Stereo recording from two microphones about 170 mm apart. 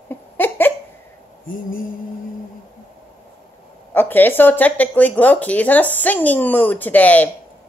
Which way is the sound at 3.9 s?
10° left (ahead or behind).